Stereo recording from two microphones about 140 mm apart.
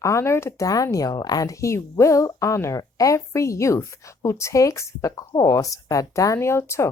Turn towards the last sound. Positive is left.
turn(degrees=20)  # may be behind; listen again after turning